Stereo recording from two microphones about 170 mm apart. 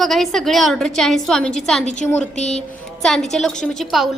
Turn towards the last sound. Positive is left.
turn(degrees=0)  # may be behind; listen again after turning